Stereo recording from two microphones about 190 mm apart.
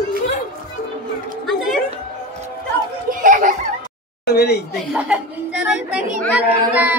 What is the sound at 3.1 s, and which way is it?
Children playing, 45° right (ahead or behind).